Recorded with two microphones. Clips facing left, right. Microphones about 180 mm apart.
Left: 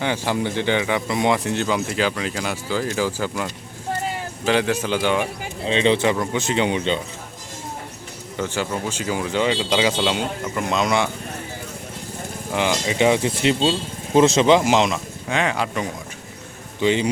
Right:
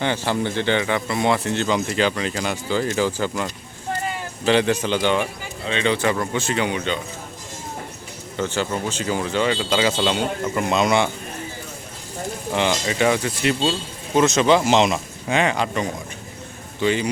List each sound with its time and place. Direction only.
0.0 s speech: 10° left (ahead or behind)
5.6 s speech: 30° left (ahead or behind)
8.4 s speech: 10° left (ahead or behind)
10.5 s speech: 5° right (ahead or behind)
12.5 s speech: 10° left (ahead or behind)
13.0 s speech: 20° left (ahead or behind)
14.8 s speech: 5° right (ahead or behind)
16.8 s speech: 20° left (ahead or behind)